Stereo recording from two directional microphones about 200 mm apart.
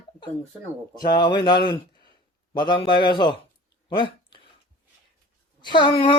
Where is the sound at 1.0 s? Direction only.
20° left (ahead or behind).